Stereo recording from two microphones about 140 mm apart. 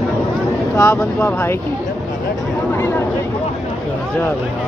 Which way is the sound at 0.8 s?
20° left (ahead or behind).